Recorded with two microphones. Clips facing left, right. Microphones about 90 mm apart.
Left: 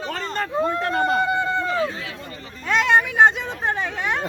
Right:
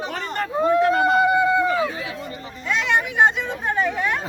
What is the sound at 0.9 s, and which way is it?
Run, 5° right (ahead or behind).